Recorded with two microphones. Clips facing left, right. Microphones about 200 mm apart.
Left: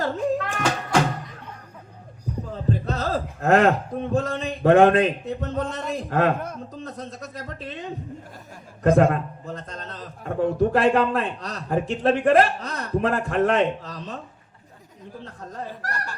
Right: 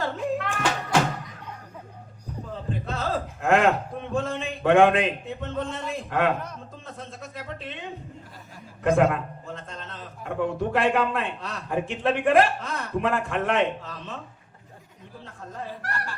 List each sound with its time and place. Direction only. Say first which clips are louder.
0.0 s a sound: left 3 dB; 40° left (ahead or behind)
2.8 s a man's voice: left 3 dB; 40° left (ahead or behind)
15.2 s a man's voice: left 2 dB; 40° left (ahead or behind)